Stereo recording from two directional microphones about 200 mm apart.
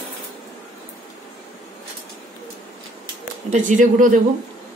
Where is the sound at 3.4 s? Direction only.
40° right (ahead or behind).